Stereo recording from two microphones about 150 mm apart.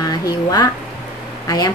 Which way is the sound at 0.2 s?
25° left (ahead or behind).